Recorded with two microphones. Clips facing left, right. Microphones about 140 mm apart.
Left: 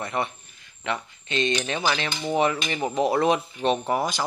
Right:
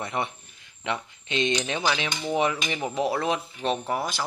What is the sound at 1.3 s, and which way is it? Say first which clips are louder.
Speech: left 1 dB; 15° right (ahead or behind).